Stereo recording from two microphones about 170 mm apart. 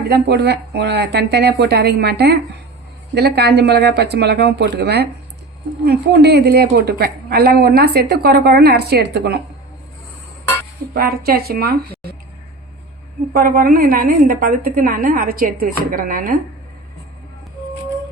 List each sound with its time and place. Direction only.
0.1 s a woman's voice: 75° right (ahead or behind)
10.9 s a woman's voice: 65° right (ahead or behind)
13.3 s a woman's voice: 55° right (ahead or behind)